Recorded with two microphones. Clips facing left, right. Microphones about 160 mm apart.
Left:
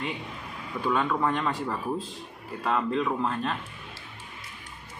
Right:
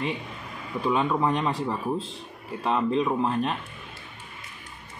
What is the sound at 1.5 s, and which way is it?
Speech, 30° right (ahead or behind).